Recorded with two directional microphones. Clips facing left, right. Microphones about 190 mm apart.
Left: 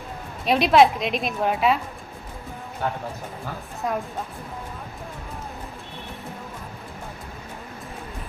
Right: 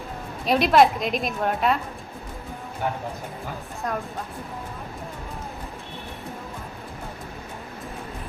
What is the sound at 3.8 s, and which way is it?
Speech, 5° left (ahead or behind).